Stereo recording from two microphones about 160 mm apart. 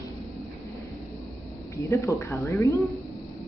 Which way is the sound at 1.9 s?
20° left (ahead or behind).